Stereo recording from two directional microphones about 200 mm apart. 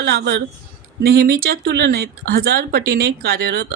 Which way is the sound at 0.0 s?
55° right (ahead or behind).